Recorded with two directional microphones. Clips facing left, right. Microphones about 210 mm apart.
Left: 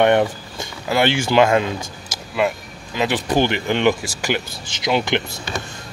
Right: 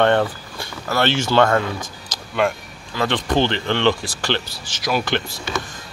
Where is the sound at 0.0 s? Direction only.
15° left (ahead or behind).